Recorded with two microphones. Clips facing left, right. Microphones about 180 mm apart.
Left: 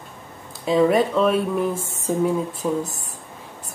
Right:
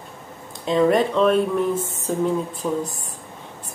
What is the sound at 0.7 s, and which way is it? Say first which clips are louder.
Speech: even; 5° left (ahead or behind).